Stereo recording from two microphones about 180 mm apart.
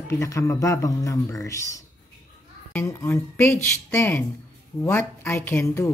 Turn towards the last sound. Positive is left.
turn(degrees=10)  # may be behind; listen again after turning